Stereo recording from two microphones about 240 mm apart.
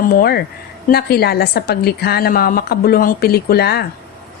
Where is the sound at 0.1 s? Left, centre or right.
Left.